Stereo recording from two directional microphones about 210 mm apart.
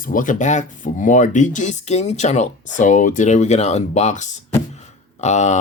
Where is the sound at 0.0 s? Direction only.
40° left (ahead or behind).